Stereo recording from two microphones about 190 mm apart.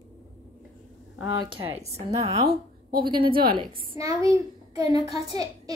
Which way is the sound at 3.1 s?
25° right (ahead or behind).